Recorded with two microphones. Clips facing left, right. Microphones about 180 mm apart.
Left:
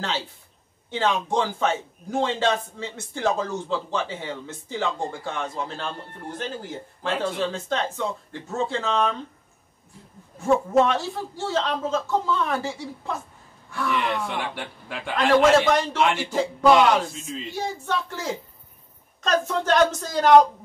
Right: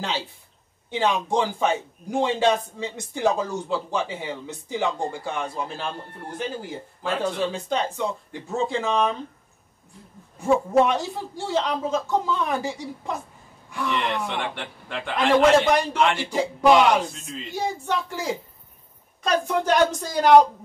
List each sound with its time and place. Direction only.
0.8 s a man's voice: 15° right (ahead or behind)
10.5 s a man's voice: centre (ahead or behind)
10.9 s a man's voice: 15° right (ahead or behind)
13.8 s a man's voice: centre (ahead or behind)
15.7 s a man's voice: 15° right (ahead or behind)
16.0 s a man's voice: 5° left (ahead or behind)
16.3 s a man's voice: 15° right (ahead or behind)